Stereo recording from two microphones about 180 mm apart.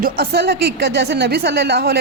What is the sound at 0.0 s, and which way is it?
A woman's voice, 60° right (ahead or behind).